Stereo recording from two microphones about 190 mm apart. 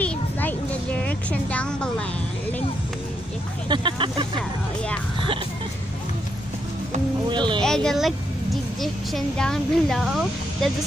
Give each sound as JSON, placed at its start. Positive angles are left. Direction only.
{"t": 0.0, "sound": "a sound", "side_deg": 10}
{"t": 3.6, "sound": "speech", "side_deg": -25}
{"t": 7.2, "sound": "speech", "side_deg": -25}
{"t": 7.6, "sound": "speech", "side_deg": 5}